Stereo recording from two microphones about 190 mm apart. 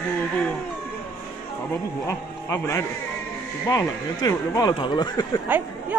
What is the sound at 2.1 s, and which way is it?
A man's voice, 15° left (ahead or behind).